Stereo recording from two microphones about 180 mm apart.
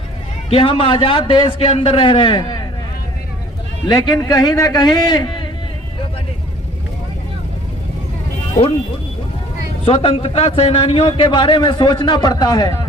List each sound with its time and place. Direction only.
0.5 s a man's voice: 30° left (ahead or behind)
3.8 s a man's voice: 20° left (ahead or behind)
9.8 s a man's voice: 35° left (ahead or behind)